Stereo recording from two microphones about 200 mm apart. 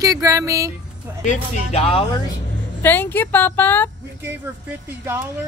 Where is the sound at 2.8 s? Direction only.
10° left (ahead or behind).